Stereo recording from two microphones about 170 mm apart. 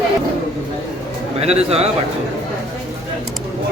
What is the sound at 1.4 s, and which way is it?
Speech, 40° right (ahead or behind).